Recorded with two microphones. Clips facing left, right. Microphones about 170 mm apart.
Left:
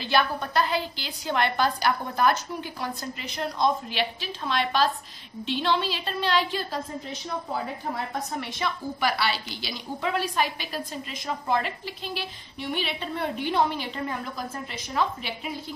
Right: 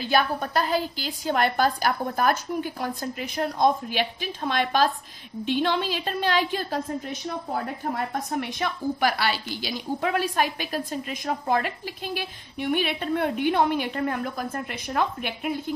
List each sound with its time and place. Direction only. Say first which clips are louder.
0.0 s a woman's voice: right 2 dB; 45° right (ahead or behind)